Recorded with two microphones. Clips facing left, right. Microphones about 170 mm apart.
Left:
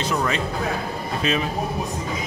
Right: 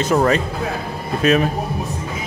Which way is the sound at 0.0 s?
45° right (ahead or behind).